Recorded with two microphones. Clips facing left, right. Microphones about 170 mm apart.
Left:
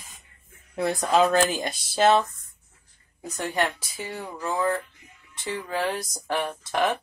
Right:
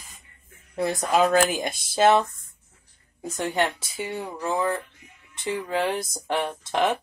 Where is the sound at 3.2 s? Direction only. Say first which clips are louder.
Right 2 dB; 25° right (ahead or behind).